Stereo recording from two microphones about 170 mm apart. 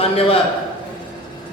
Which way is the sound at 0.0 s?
35° left (ahead or behind).